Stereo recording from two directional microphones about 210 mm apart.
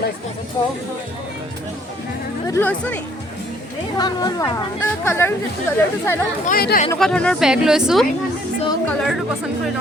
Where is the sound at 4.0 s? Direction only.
20° left (ahead or behind).